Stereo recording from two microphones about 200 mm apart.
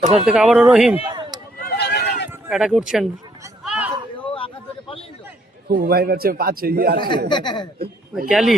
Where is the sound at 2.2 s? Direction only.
10° right (ahead or behind).